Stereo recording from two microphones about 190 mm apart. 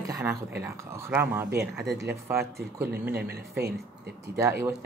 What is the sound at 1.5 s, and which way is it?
Speech, 60° right (ahead or behind).